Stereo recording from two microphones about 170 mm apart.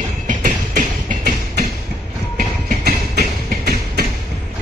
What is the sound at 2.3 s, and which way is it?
Train, 60° right (ahead or behind).